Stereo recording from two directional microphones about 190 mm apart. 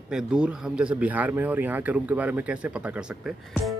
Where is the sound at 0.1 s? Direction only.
5° right (ahead or behind).